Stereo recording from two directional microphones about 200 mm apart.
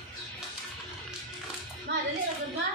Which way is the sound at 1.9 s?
65° right (ahead or behind).